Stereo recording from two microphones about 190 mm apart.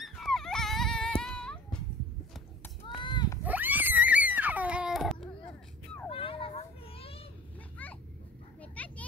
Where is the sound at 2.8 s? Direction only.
25° left (ahead or behind).